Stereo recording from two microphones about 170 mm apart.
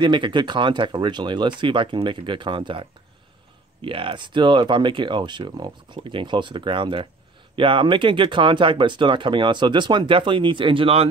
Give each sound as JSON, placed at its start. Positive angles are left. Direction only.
{"t": 0.0, "sound": "speech", "side_deg": -25}